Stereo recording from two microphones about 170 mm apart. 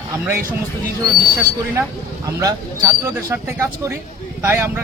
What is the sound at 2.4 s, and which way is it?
Speech, 20° right (ahead or behind).